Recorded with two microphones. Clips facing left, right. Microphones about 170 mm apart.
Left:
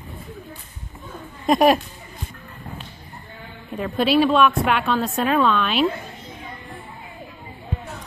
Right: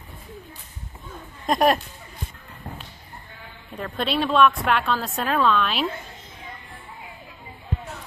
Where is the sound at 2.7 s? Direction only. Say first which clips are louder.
Left 1 dB; 20° right (ahead or behind).